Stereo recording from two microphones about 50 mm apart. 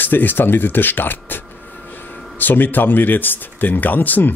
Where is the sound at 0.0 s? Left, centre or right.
Left.